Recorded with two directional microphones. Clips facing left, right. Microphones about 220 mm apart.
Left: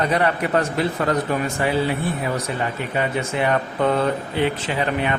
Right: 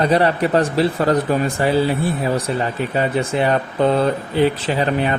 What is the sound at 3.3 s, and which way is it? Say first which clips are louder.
Speech: right 3 dB; 30° right (ahead or behind).